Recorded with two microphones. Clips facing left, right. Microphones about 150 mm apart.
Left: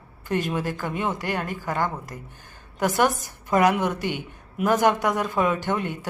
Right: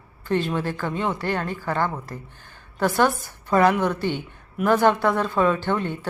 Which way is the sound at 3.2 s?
15° left (ahead or behind).